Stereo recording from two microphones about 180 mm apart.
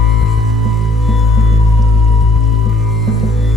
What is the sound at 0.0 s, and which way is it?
Music, centre (ahead or behind).